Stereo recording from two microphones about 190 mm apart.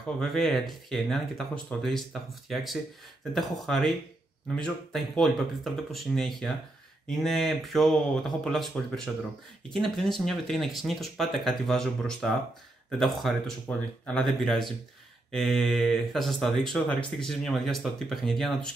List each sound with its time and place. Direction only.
0.2 s speech: centre (ahead or behind)